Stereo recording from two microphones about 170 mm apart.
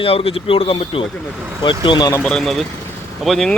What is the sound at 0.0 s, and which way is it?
Speech, 35° left (ahead or behind).